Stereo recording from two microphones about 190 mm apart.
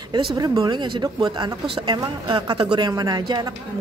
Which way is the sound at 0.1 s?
25° right (ahead or behind).